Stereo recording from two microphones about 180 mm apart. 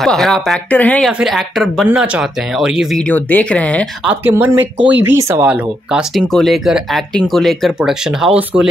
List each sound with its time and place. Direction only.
0.0 s speech: centre (ahead or behind)
3.1 s speech: 10° left (ahead or behind)
4.0 s speech: 10° right (ahead or behind)
4.7 s speech: 80° right
5.0 s speech: 10° right (ahead or behind)